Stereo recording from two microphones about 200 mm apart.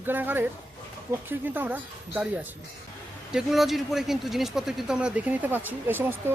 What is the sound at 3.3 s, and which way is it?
Speech, centre (ahead or behind).